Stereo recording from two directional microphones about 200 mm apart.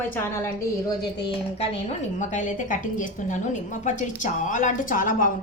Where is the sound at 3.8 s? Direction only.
40° left (ahead or behind).